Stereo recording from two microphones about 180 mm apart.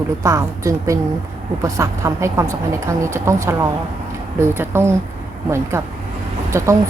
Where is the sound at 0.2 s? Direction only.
15° right (ahead or behind).